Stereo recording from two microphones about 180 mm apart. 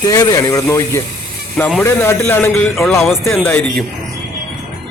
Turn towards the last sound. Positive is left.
turn(degrees=10)  # may be behind; listen again after turning